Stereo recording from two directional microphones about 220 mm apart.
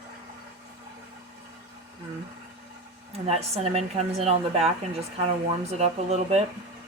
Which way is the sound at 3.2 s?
30° right (ahead or behind).